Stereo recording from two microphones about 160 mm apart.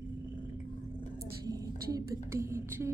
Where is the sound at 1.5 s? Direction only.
20° right (ahead or behind).